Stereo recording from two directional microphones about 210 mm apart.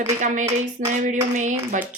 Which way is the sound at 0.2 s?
35° right (ahead or behind).